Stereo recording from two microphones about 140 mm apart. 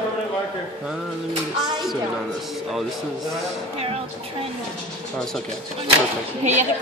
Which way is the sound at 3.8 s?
45° right (ahead or behind).